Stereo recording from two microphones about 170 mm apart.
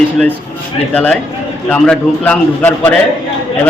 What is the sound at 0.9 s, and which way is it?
A man's voice, 10° left (ahead or behind).